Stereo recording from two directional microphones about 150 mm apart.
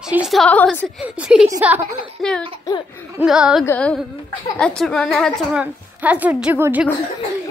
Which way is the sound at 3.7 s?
10° left (ahead or behind).